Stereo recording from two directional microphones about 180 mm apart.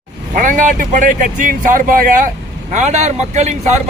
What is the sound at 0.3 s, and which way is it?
Speech, 45° right (ahead or behind).